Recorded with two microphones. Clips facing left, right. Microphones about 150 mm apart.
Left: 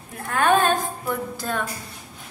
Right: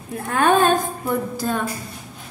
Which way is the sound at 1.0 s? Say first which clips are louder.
Right 4 dB; 35° right (ahead or behind).